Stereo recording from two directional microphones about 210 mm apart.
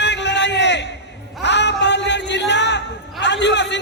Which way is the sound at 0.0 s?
55° left (ahead or behind).